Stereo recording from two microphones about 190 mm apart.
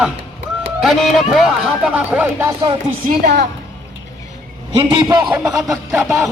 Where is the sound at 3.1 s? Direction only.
50° right (ahead or behind).